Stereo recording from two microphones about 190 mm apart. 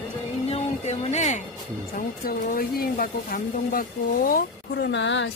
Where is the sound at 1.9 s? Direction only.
50° left (ahead or behind).